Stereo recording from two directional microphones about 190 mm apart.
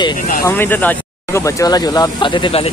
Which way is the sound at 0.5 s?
10° left (ahead or behind).